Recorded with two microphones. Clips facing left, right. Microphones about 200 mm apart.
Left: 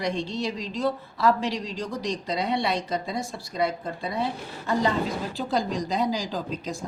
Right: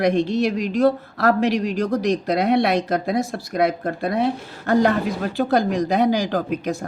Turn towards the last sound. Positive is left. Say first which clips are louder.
# right 7 dB
turn(degrees=-65)  # may be behind; listen again after turning